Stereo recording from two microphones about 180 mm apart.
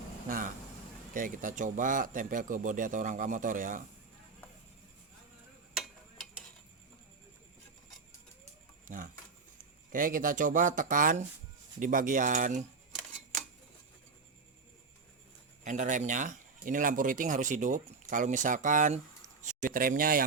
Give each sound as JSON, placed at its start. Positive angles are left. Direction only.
{"t": 0.3, "sound": "speech", "side_deg": -50}
{"t": 8.8, "sound": "a sound", "side_deg": -45}
{"t": 9.6, "sound": "speech", "side_deg": -50}
{"t": 15.6, "sound": "speech", "side_deg": -45}